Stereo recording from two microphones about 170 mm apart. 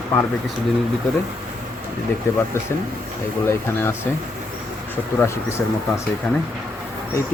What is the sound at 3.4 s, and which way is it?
Speech, 15° left (ahead or behind).